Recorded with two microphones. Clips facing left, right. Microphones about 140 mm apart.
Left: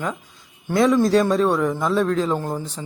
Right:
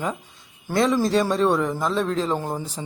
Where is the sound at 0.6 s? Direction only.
Centre (ahead or behind).